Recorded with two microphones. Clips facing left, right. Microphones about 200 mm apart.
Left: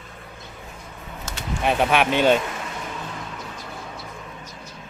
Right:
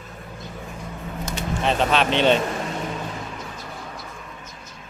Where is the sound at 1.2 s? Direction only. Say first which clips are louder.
Even; 10° left (ahead or behind).